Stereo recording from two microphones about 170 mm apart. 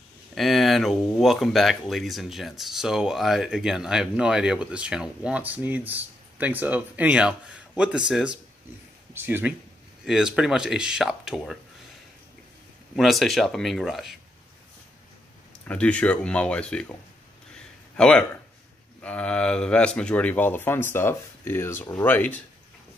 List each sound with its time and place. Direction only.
0.3 s speech: centre (ahead or behind)
9.1 s speech: 10° right (ahead or behind)
12.9 s speech: centre (ahead or behind)
15.6 s speech: 5° left (ahead or behind)
17.9 s speech: 5° left (ahead or behind)